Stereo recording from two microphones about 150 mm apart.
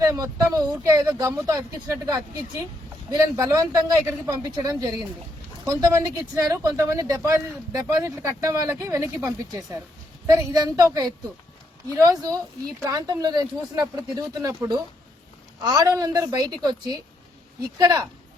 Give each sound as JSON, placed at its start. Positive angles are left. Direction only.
{"t": 0.0, "sound": "speech", "side_deg": -20}
{"t": 3.1, "sound": "speech", "side_deg": -20}